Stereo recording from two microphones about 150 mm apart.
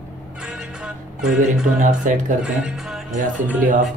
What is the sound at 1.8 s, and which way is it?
Speech, 60° right (ahead or behind).